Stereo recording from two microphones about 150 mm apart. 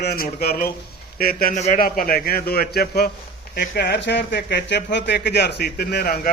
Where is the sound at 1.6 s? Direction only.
65° left (ahead or behind).